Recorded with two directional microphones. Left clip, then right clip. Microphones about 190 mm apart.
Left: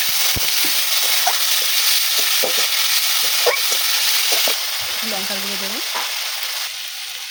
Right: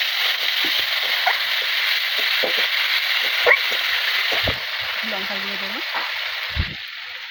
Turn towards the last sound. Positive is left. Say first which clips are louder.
# left 1 dB
turn(degrees=25)  # may be behind; listen again after turning